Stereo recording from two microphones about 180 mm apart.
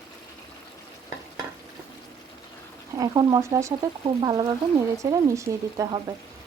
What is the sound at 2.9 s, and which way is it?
Speech, 20° right (ahead or behind).